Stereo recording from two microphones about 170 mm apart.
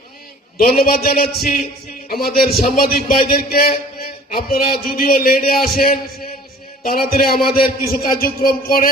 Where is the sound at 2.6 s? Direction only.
55° left (ahead or behind).